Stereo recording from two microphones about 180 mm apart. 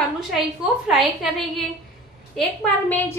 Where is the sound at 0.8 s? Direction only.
Centre (ahead or behind).